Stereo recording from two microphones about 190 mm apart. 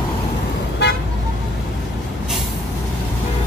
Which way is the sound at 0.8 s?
65° left (ahead or behind).